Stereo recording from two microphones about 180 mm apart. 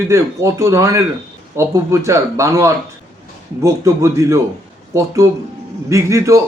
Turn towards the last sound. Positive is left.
turn(degrees=-15)  # may be behind; listen again after turning